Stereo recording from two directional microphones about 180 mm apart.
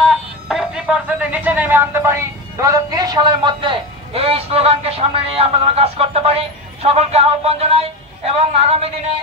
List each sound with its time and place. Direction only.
0.1 s speech: centre (ahead or behind); by 8.9 s 35° right (ahead or behind)